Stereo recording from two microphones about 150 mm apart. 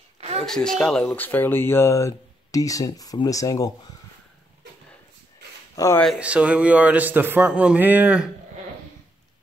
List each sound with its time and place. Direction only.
0.5 s speech: 5° left (ahead or behind); by 3.9 s 25° left (ahead or behind)
5.8 s speech: 25° left (ahead or behind)
6.1 s a man's voice: 10° right (ahead or behind)